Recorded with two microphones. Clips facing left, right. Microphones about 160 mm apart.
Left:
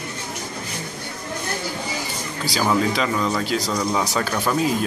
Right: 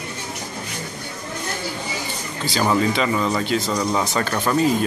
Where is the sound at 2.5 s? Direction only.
Centre (ahead or behind).